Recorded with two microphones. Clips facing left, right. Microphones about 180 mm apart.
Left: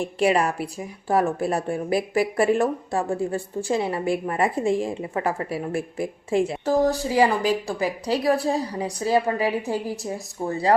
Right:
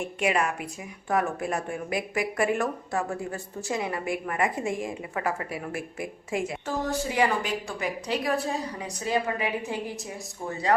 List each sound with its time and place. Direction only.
0.0 s a woman's voice: 35° left (ahead or behind)